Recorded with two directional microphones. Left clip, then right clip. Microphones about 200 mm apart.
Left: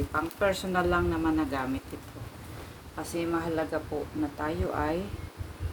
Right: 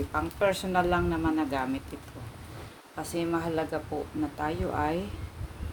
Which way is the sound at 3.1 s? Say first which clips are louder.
Even; 40° right (ahead or behind).